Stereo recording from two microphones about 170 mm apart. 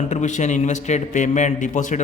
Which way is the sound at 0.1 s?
45° left (ahead or behind).